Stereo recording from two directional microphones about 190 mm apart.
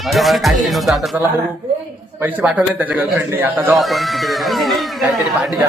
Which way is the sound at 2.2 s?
10° right (ahead or behind).